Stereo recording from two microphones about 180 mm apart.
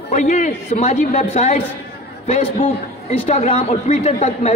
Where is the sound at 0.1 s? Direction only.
40° left (ahead or behind).